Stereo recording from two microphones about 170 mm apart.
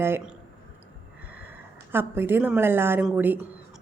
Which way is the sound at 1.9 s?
15° right (ahead or behind).